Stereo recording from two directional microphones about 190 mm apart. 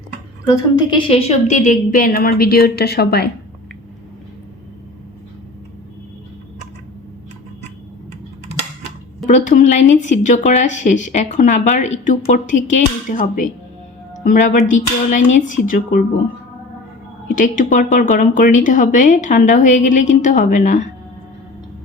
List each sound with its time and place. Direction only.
0.4 s a woman's voice: 20° left (ahead or behind); by 3.2 s 55° left (ahead or behind)
9.2 s a woman's voice: 40° left (ahead or behind)
17.2 s a woman's voice: 45° left (ahead or behind)